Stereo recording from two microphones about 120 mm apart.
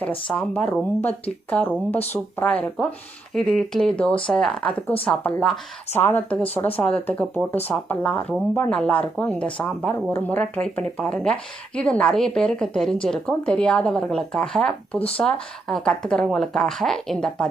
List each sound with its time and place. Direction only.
0.3 s speech: 5° left (ahead or behind)